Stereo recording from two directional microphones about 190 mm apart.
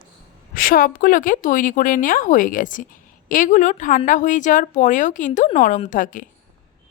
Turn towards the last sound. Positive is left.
turn(degrees=45)  # may be behind; listen again after turning